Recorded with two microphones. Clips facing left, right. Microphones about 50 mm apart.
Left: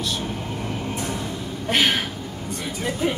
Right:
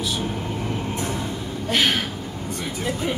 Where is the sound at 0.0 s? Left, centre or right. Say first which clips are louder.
Right 1 dB; centre.